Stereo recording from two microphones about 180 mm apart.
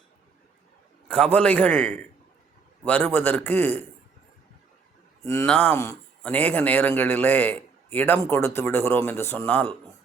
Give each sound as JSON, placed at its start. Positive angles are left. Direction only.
{"t": 1.0, "sound": "a man's voice", "side_deg": 5}
{"t": 5.2, "sound": "speech", "side_deg": 15}
{"t": 5.5, "sound": "speech", "side_deg": 5}
{"t": 5.7, "sound": "a man's voice", "side_deg": 15}